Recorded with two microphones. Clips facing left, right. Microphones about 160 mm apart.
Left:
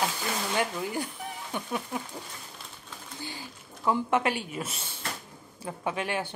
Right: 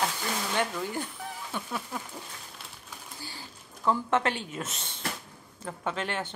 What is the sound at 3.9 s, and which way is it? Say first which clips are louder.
Speech: left 1 dB; 10° left (ahead or behind).